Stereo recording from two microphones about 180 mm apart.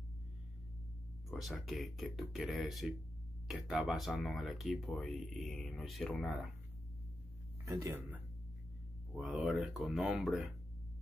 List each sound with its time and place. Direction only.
1.3 s speech: centre (ahead or behind)
7.6 s speech: 15° right (ahead or behind)
9.1 s speech: centre (ahead or behind)